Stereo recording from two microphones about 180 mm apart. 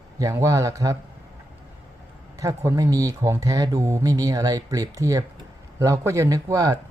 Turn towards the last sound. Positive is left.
turn(degrees=-20)  # may be behind; listen again after turning